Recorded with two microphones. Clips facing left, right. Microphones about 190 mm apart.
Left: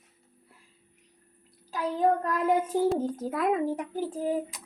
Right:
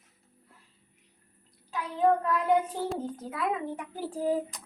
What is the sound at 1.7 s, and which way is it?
Child singing, 40° left (ahead or behind).